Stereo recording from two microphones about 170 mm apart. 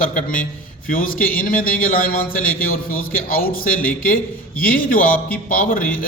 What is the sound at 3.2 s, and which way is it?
A man's voice, 55° left (ahead or behind).